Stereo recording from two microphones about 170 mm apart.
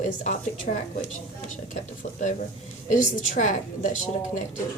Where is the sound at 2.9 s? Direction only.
50° left (ahead or behind).